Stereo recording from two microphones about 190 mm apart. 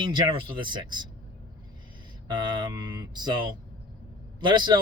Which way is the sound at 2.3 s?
25° right (ahead or behind).